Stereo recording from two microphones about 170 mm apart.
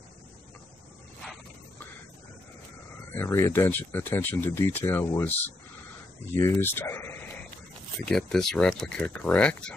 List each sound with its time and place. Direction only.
3.2 s speech: 15° left (ahead or behind)
6.6 s speech: 15° left (ahead or behind)